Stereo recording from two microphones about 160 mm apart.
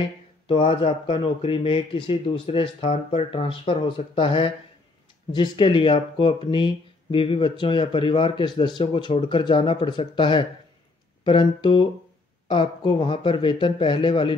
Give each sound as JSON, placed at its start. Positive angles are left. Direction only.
{"t": 0.5, "sound": "speech", "side_deg": 35}